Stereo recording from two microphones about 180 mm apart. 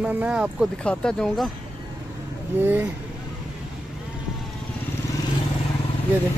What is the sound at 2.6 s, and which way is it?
Speech, 10° right (ahead or behind).